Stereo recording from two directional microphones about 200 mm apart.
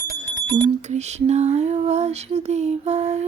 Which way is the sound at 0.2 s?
35° right (ahead or behind).